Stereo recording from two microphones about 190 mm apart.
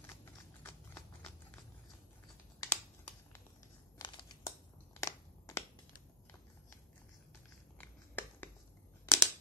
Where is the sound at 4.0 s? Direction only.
25° left (ahead or behind).